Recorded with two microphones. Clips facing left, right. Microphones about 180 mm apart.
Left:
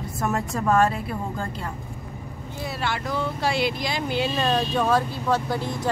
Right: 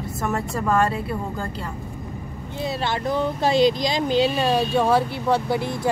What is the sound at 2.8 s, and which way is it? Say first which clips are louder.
Speech: right 3 dB; 25° right (ahead or behind).